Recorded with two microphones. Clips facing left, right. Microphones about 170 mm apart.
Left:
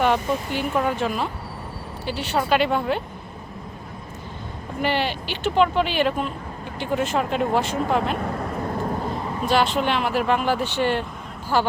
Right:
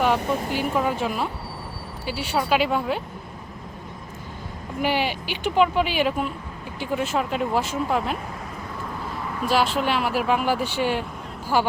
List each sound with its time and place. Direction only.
0.0 s speech: 5° right (ahead or behind)
4.8 s speech: 10° right (ahead or behind)
8.2 s vehicle: 55° left (ahead or behind); by 9.5 s 30° left (ahead or behind)
9.5 s speech: 5° right (ahead or behind)